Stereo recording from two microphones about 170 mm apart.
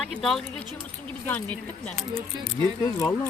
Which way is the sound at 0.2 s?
Centre (ahead or behind).